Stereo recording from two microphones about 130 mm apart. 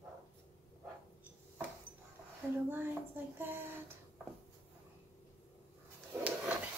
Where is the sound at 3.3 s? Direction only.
15° right (ahead or behind).